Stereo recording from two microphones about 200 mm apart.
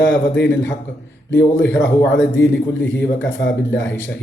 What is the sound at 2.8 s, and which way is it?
Speech, 65° left (ahead or behind).